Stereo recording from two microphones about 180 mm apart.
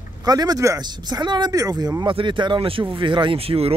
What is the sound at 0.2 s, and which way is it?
Speech, 20° right (ahead or behind).